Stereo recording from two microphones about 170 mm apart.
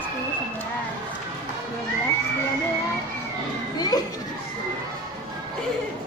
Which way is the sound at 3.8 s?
20° left (ahead or behind).